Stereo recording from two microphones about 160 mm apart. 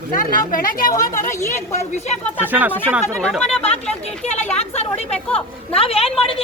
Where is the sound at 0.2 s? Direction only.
60° left (ahead or behind).